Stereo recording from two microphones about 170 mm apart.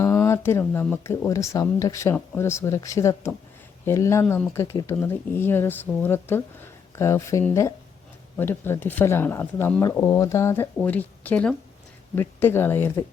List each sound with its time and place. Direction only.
0.0 s speech: 15° left (ahead or behind)